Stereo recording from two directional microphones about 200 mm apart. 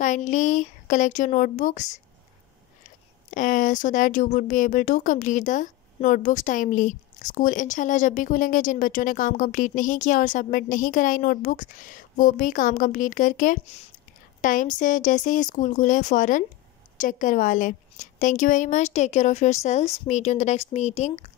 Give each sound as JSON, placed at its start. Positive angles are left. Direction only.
{"t": 0.0, "sound": "speech", "side_deg": 40}
{"t": 3.3, "sound": "speech", "side_deg": 40}